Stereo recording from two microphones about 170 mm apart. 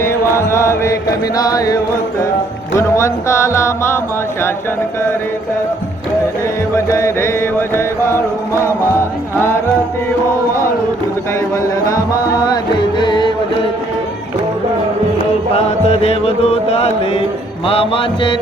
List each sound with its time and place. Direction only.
0.0 s mantra: 15° left (ahead or behind)
1.4 s speech: 20° left (ahead or behind)
6.7 s speech: 15° left (ahead or behind)
11.3 s speech: 20° left (ahead or behind)
13.0 s music: 25° left (ahead or behind)
15.5 s music: 35° left (ahead or behind)
17.7 s mantra: 35° left (ahead or behind)